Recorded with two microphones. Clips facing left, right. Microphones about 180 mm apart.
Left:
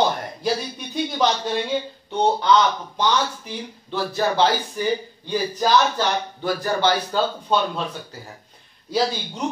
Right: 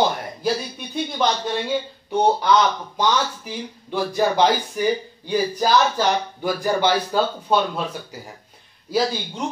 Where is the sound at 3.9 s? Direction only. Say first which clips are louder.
Right 2 dB; 15° right (ahead or behind).